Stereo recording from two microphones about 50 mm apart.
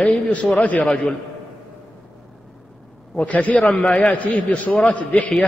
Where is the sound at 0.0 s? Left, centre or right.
Left.